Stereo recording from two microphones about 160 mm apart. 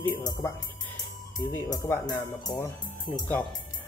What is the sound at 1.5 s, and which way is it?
Speech, 20° left (ahead or behind).